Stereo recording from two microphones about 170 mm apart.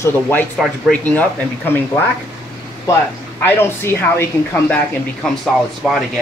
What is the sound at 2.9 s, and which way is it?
Speech, 15° left (ahead or behind).